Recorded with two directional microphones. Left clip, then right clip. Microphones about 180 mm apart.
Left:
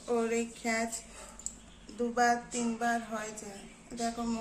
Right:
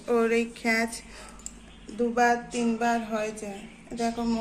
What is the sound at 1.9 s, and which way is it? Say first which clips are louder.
A woman's voice: right 5 dB; 25° right (ahead or behind).